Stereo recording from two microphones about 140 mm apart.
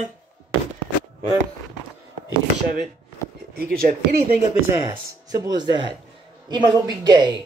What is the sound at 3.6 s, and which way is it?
Speech, 90° right.